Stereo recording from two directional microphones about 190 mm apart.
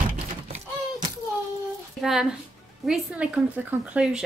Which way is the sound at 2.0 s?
Centre (ahead or behind).